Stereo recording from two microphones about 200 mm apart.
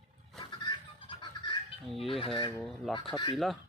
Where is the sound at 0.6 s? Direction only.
20° left (ahead or behind).